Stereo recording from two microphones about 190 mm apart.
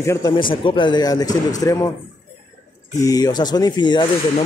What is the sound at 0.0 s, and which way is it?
Speech, 15° left (ahead or behind).